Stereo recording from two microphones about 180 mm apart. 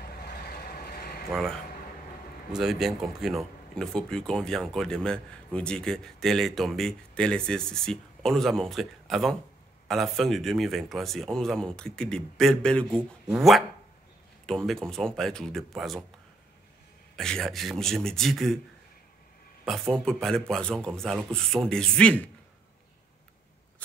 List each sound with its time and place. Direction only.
0.0 s vehicle: 55° left (ahead or behind)
2.5 s speech: centre (ahead or behind)
17.1 s speech: 5° left (ahead or behind)
19.6 s speech: centre (ahead or behind)